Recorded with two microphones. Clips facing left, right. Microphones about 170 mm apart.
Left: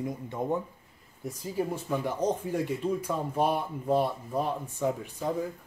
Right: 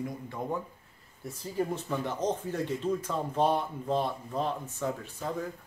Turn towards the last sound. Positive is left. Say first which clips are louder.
# left 4 dB
turn(degrees=15)  # may be behind; listen again after turning